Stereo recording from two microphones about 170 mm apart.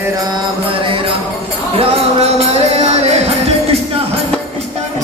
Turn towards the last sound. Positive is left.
turn(degrees=-40)  # may be behind; listen again after turning